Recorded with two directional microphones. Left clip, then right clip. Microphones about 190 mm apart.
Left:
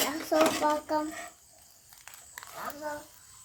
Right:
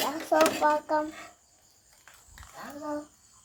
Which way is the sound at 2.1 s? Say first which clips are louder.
Left 4 dB; 10° left (ahead or behind).